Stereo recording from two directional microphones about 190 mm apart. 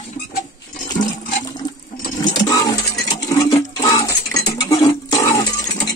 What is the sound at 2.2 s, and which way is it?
Toilet flush, 20° left (ahead or behind).